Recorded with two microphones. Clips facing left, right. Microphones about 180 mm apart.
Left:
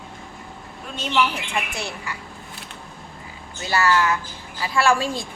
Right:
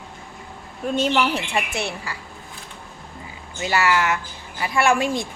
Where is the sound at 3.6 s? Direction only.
20° right (ahead or behind).